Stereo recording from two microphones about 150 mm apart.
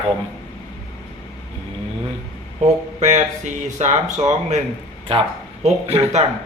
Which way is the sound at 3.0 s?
55° right (ahead or behind).